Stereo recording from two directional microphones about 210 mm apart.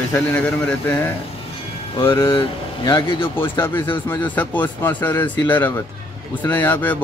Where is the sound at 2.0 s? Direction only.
25° left (ahead or behind).